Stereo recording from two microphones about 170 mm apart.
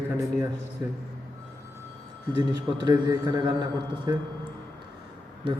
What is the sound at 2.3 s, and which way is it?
A man's voice, 25° right (ahead or behind).